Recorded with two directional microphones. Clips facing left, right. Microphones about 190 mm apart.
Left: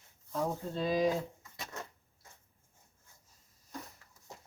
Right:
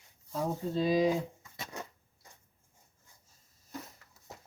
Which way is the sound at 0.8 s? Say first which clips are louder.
Right 2 dB; 10° right (ahead or behind).